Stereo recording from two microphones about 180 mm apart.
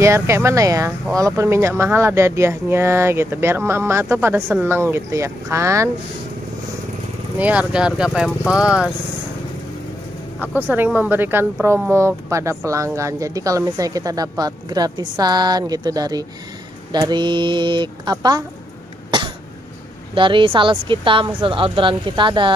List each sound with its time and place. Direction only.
0.0 s speech: 15° right (ahead or behind)
7.3 s speech: 5° right (ahead or behind)
10.4 s speech: 10° right (ahead or behind)
19.0 s cough: 25° right (ahead or behind)
20.2 s speech: 25° right (ahead or behind)